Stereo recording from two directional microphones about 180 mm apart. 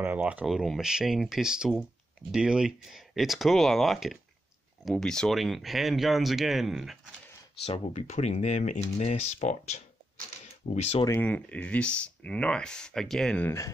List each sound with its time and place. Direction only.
0.0 s speech: 10° right (ahead or behind)
7.6 s speech: 35° left (ahead or behind)
11.1 s speech: 10° left (ahead or behind)